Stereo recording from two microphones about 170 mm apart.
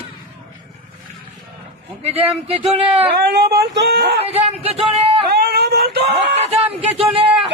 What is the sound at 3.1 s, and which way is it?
Speech, 70° right (ahead or behind).